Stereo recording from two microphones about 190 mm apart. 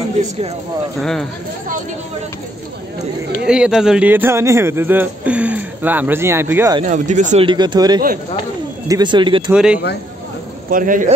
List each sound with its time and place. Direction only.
3.4 s a man's voice: 5° right (ahead or behind)
6.8 s speech: 40° right (ahead or behind)
7.4 s speech: 20° right (ahead or behind)
9.5 s speech: 5° right (ahead or behind)
10.7 s speech: 45° right (ahead or behind)